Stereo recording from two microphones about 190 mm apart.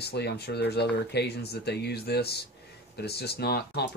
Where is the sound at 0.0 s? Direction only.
60° left (ahead or behind).